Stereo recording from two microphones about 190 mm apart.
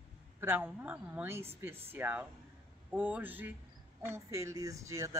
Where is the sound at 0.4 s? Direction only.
10° right (ahead or behind).